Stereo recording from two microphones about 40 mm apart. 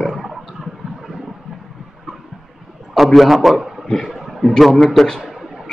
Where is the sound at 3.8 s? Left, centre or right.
Centre.